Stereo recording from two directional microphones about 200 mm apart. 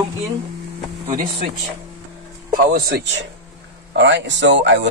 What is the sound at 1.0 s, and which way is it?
Speech, 45° right (ahead or behind).